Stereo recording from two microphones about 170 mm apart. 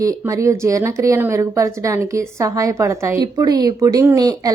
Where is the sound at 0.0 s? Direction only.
20° right (ahead or behind).